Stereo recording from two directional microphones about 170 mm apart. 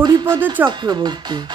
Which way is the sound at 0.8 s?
25° right (ahead or behind).